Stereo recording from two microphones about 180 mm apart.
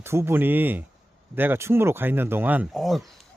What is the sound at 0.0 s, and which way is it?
Speech, 15° right (ahead or behind).